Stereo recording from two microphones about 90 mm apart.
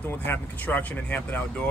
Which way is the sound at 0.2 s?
20° left (ahead or behind).